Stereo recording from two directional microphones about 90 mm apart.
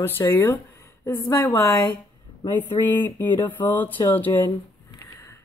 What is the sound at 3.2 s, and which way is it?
Speech, 20° left (ahead or behind).